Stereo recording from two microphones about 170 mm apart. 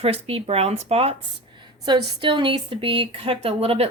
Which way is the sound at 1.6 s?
25° right (ahead or behind).